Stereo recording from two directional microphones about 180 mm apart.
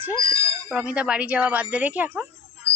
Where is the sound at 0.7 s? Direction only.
5° right (ahead or behind).